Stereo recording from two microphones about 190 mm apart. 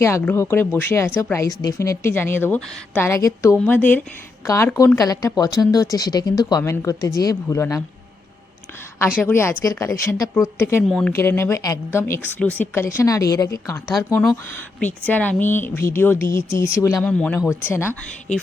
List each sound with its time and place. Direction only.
0.0 s a woman's voice: 15° left (ahead or behind)
9.2 s a woman's voice: 15° left (ahead or behind)
10.8 s speech: centre (ahead or behind)
11.1 s a woman's voice: 15° left (ahead or behind)
15.0 s a woman's voice: 10° left (ahead or behind)